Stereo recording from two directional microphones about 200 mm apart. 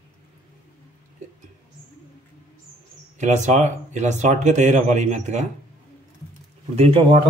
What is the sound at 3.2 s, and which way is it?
Speech, 35° right (ahead or behind).